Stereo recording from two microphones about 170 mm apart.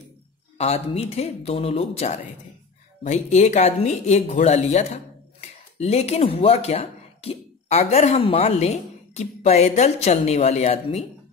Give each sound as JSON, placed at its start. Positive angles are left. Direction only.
{"t": 0.6, "sound": "speech", "side_deg": 40}